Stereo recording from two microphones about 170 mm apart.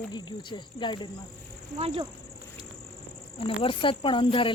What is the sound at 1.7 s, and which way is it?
Speech, 35° right (ahead or behind).